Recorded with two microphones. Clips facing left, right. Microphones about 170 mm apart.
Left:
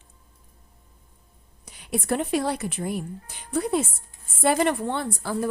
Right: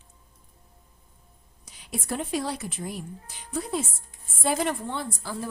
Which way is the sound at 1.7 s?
60° left (ahead or behind).